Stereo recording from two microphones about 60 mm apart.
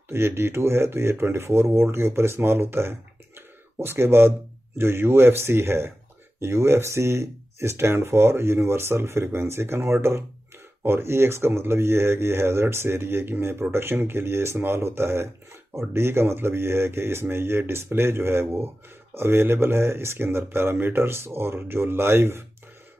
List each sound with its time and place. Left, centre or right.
0.1 s speech: right